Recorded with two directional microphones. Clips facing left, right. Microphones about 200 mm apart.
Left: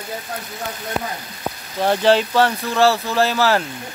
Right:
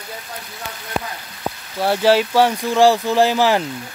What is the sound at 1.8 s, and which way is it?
Speech, 10° right (ahead or behind).